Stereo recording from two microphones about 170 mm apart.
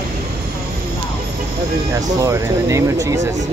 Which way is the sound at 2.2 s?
20° right (ahead or behind).